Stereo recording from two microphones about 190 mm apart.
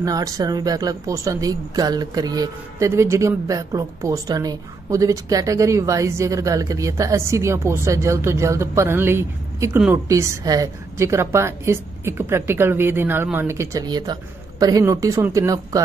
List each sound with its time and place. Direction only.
0.0 s speech: 20° right (ahead or behind)